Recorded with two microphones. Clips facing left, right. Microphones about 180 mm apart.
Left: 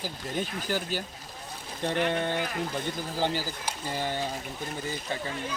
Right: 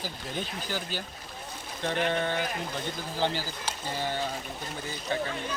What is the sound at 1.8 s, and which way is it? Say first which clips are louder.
Speech: left 1 dB; 15° left (ahead or behind).